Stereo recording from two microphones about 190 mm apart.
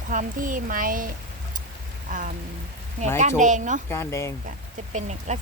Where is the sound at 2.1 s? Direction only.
45° right (ahead or behind).